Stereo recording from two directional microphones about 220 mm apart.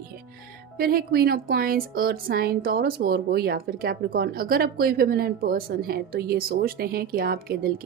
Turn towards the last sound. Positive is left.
turn(degrees=-45)  # may be behind; listen again after turning